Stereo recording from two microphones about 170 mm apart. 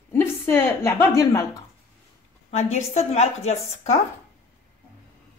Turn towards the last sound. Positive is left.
turn(degrees=40)  # may be behind; listen again after turning